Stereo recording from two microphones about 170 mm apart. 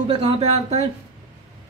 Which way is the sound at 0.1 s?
35° right (ahead or behind).